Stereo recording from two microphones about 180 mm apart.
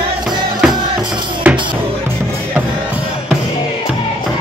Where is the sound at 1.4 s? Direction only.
10° right (ahead or behind).